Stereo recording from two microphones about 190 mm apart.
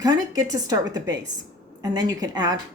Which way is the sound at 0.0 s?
20° right (ahead or behind).